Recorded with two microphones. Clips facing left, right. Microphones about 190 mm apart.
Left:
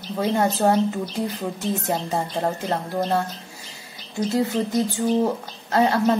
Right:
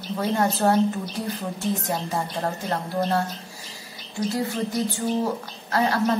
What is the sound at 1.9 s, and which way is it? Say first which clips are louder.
A woman's voice: left 2 dB; 20° left (ahead or behind).